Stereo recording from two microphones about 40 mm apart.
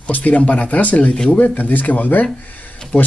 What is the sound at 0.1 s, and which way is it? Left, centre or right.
Speech, left.